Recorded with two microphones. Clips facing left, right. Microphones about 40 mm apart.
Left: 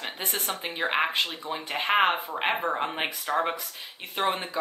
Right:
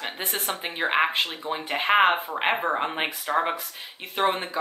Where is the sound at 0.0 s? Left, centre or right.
Centre.